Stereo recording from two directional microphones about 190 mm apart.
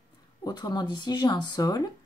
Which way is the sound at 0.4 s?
20° left (ahead or behind).